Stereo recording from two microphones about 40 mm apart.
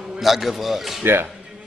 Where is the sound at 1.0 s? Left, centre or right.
Right.